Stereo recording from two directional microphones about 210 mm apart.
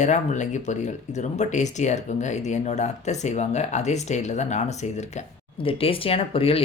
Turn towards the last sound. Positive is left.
turn(degrees=25)  # may be behind; listen again after turning